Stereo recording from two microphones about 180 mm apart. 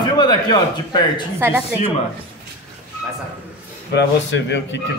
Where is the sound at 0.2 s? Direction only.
25° left (ahead or behind).